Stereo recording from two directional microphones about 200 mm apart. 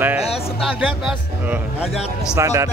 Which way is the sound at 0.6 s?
5° right (ahead or behind).